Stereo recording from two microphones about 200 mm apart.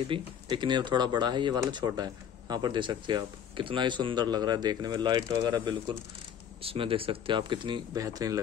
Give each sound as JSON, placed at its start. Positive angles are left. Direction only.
{"t": 0.1, "sound": "speech", "side_deg": -25}